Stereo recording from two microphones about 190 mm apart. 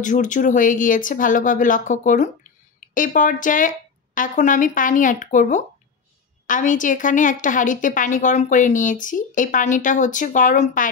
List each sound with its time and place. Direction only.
0.0 s a woman's voice: 40° left (ahead or behind)